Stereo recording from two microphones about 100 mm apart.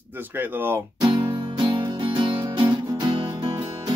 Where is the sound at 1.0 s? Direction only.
45° right (ahead or behind).